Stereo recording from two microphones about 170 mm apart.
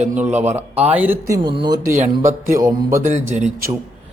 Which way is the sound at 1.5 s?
25° right (ahead or behind).